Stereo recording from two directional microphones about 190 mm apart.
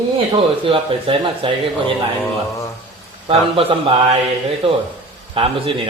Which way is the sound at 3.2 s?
30° right (ahead or behind).